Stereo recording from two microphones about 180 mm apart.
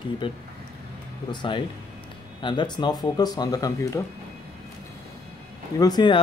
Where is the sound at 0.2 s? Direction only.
25° left (ahead or behind).